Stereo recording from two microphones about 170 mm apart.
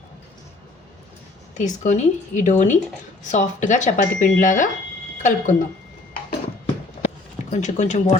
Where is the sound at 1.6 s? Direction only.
45° left (ahead or behind).